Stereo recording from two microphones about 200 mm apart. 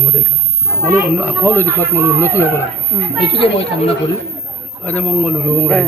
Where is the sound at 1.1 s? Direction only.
10° left (ahead or behind).